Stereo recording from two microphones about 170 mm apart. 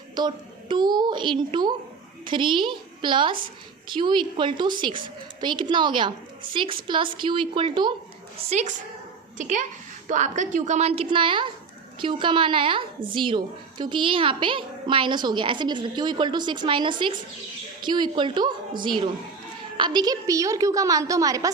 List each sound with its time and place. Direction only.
0.1 s a woman's voice: 25° right (ahead or behind)
8.4 s a child's voice: 45° right (ahead or behind); by 21.5 s 20° right (ahead or behind)